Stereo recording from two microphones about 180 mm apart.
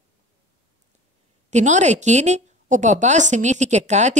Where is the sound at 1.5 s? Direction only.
40° right (ahead or behind).